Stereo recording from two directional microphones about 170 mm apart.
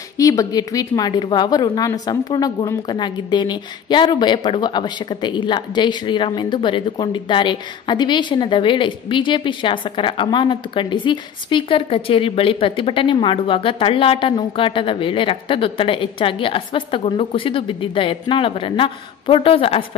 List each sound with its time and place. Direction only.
0.2 s speech: 20° left (ahead or behind)